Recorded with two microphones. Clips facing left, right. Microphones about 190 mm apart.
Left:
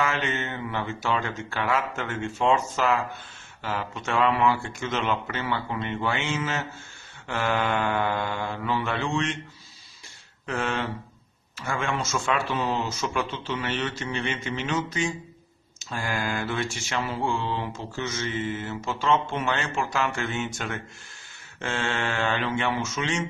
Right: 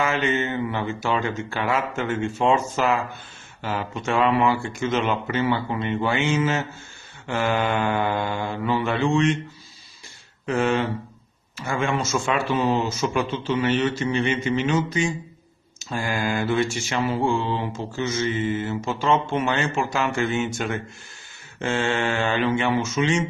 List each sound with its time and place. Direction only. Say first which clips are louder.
0.0 s speech: right 5 dB; 5° right (ahead or behind)
10.4 s speech: right 7 dB; 5° right (ahead or behind)